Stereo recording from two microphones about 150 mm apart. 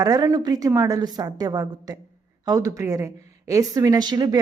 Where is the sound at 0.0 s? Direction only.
25° right (ahead or behind).